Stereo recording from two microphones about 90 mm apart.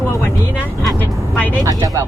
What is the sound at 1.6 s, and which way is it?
Speech, 40° right (ahead or behind).